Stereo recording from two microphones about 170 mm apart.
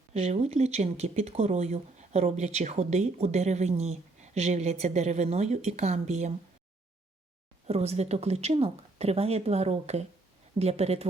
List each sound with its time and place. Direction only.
0.1 s speech: 40° right (ahead or behind)
7.7 s speech: 40° right (ahead or behind)